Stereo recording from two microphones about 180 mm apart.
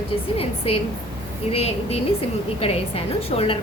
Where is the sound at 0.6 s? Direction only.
30° left (ahead or behind).